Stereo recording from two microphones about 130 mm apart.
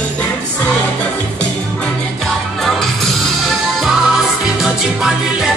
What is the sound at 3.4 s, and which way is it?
Music, centre (ahead or behind).